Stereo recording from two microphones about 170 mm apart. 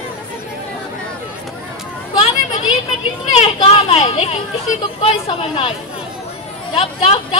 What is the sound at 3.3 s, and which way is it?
Speech, 30° left (ahead or behind).